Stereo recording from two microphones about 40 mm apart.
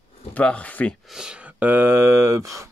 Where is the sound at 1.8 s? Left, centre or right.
Right.